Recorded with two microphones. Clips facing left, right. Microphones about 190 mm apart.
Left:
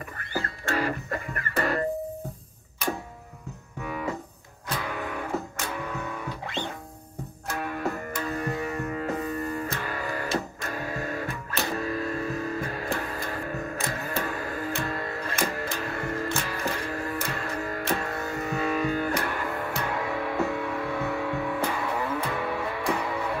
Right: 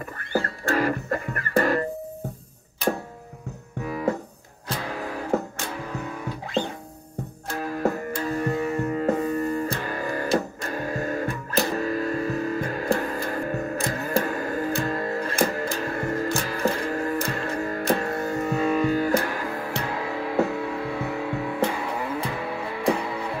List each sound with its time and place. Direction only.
0.2 s music: 40° right (ahead or behind)
4.6 s music: 30° right (ahead or behind)
7.4 s music: 35° right (ahead or behind)